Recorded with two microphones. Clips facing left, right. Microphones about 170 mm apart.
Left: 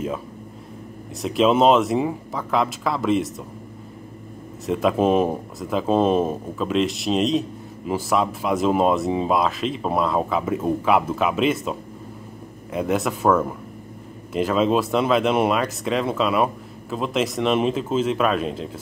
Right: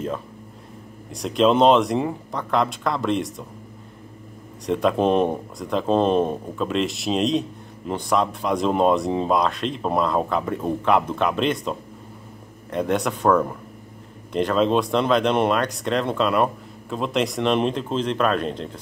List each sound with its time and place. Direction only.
1.1 s speech: 5° left (ahead or behind)
4.6 s speech: 5° left (ahead or behind)